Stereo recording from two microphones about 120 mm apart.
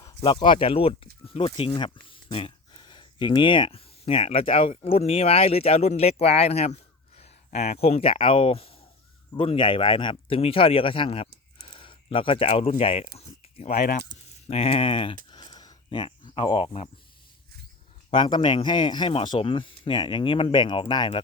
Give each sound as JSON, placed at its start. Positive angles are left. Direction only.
{"t": 0.0, "sound": "speech", "side_deg": 35}
{"t": 14.4, "sound": "speech", "side_deg": 55}
{"t": 18.1, "sound": "speech", "side_deg": 40}